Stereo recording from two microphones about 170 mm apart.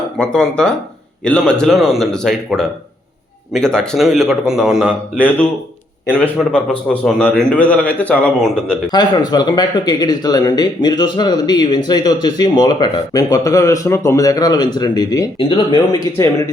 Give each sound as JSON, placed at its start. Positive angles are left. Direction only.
{"t": 0.2, "sound": "a man's voice", "side_deg": 5}
{"t": 6.1, "sound": "a man's voice", "side_deg": 5}
{"t": 8.9, "sound": "speech", "side_deg": 25}